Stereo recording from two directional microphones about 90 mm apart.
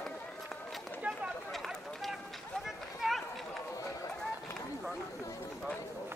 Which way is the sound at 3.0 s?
Centre (ahead or behind).